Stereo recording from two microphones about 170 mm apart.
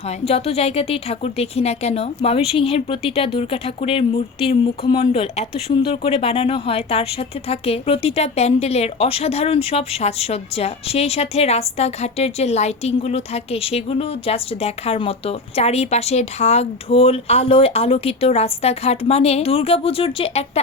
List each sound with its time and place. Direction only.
0.3 s speech: 35° left (ahead or behind)